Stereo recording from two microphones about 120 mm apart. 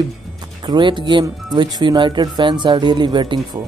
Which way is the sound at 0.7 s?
40° right (ahead or behind).